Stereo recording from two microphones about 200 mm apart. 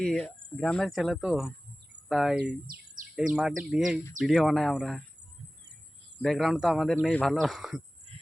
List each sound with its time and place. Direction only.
0.0 s speech: 5° left (ahead or behind)
6.2 s speech: centre (ahead or behind)
8.1 s a sound: 30° right (ahead or behind)